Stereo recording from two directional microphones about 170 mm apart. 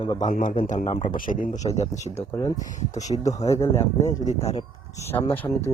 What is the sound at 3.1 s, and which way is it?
Speech, 30° left (ahead or behind).